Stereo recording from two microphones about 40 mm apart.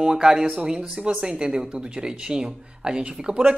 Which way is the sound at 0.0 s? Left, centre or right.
Centre.